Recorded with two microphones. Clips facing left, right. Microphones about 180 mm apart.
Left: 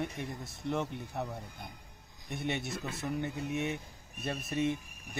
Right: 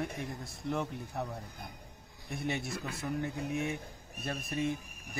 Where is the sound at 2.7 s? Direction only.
25° left (ahead or behind).